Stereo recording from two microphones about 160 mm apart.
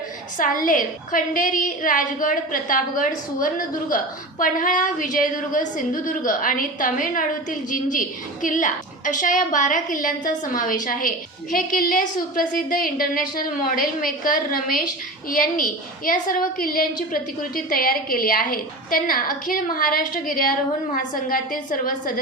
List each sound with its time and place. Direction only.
0.3 s a woman's voice: 55° left (ahead or behind)